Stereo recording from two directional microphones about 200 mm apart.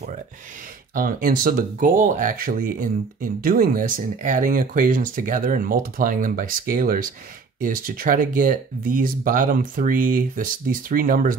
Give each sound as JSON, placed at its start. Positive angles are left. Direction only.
{"t": 0.9, "sound": "speech", "side_deg": -45}